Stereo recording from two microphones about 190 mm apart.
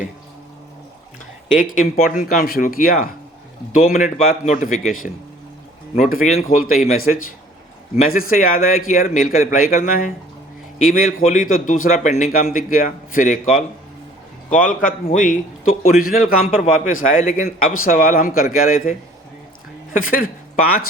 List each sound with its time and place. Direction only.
1.5 s a man's voice: 45° left (ahead or behind)
20.1 s speech: 50° left (ahead or behind)